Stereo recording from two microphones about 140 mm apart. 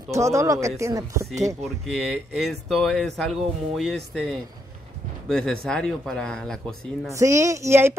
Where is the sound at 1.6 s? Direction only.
Centre (ahead or behind).